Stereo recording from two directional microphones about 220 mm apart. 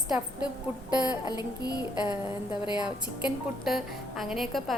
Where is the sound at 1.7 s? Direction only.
20° left (ahead or behind).